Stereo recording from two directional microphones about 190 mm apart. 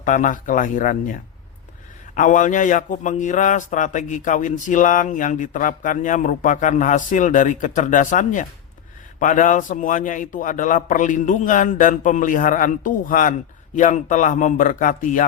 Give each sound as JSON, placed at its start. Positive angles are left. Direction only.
{"t": 0.0, "sound": "a man's voice", "side_deg": 40}